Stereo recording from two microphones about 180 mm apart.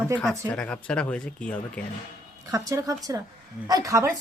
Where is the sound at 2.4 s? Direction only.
20° right (ahead or behind).